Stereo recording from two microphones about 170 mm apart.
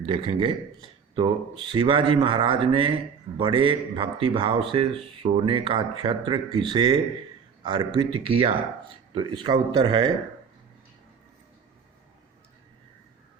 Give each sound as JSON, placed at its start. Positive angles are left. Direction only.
{"t": 0.1, "sound": "speech", "side_deg": -30}